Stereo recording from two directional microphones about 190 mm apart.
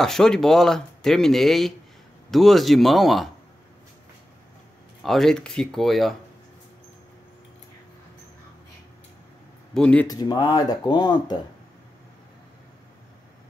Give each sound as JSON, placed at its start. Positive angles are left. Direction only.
{"t": 0.0, "sound": "speech", "side_deg": 5}
{"t": 5.0, "sound": "speech", "side_deg": 0}
{"t": 9.8, "sound": "speech", "side_deg": 5}
{"t": 10.0, "sound": "speech", "side_deg": 20}